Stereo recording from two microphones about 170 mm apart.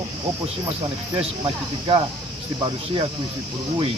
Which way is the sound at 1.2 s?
30° right (ahead or behind).